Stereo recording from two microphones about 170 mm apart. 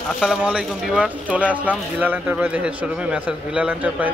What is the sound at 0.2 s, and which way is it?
Speech, 5° right (ahead or behind).